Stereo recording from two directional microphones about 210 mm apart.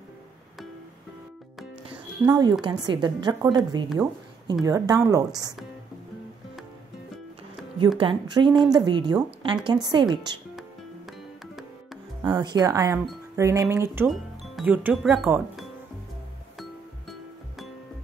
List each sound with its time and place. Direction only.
1.9 s music: 20° right (ahead or behind)
2.6 s a woman's voice: 20° right (ahead or behind)
8.0 s a woman's voice: 20° right (ahead or behind)
11.1 s music: centre (ahead or behind)
12.2 s speech: 20° right (ahead or behind)
14.0 s speech: centre (ahead or behind)